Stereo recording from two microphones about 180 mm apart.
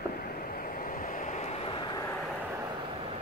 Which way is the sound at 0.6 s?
50° left (ahead or behind).